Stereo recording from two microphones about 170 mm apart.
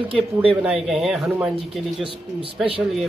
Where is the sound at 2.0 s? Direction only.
30° right (ahead or behind).